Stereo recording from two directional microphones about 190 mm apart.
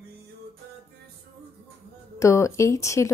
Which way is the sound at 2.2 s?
15° left (ahead or behind).